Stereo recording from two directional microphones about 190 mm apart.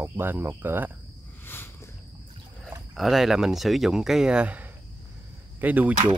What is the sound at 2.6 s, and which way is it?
Speech, centre (ahead or behind).